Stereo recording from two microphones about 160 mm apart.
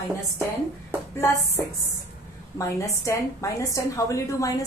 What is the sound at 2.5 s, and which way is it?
A woman's voice, 20° left (ahead or behind).